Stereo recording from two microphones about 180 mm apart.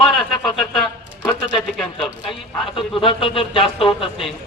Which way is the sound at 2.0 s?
30° left (ahead or behind).